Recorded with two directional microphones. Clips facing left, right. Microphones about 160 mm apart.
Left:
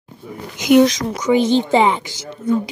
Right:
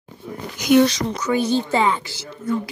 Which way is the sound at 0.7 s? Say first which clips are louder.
Left 3 dB; 15° left (ahead or behind).